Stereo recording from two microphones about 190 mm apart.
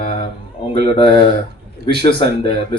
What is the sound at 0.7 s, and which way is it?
Speech, 25° left (ahead or behind).